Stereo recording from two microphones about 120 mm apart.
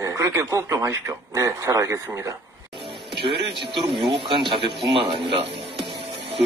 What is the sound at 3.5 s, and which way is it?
Speech, 45° right (ahead or behind).